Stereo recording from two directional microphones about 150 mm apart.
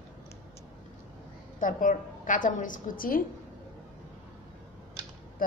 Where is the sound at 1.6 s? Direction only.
60° left (ahead or behind).